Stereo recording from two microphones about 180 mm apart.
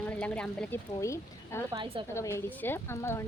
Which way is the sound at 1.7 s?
25° right (ahead or behind).